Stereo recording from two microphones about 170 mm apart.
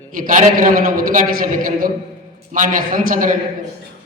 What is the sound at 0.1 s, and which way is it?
A man's voice, 50° right (ahead or behind).